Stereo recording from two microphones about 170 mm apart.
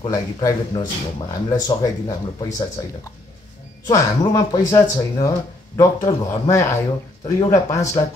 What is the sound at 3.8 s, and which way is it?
Speech, 20° left (ahead or behind).